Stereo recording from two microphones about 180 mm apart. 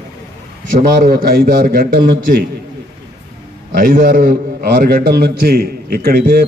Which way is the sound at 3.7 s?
50° right (ahead or behind).